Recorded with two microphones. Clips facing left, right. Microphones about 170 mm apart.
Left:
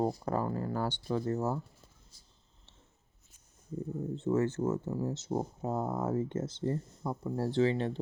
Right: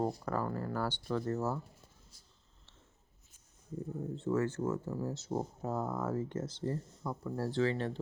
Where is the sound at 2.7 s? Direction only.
20° left (ahead or behind).